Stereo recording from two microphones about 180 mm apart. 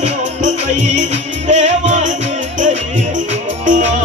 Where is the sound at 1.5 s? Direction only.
40° right (ahead or behind).